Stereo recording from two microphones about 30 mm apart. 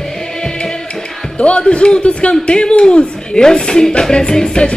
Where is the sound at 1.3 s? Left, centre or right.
Left.